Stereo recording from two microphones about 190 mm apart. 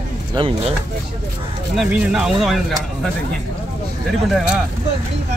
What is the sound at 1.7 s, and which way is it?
Speech, 5° right (ahead or behind).